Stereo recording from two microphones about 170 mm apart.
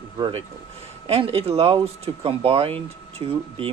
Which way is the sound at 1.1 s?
35° right (ahead or behind).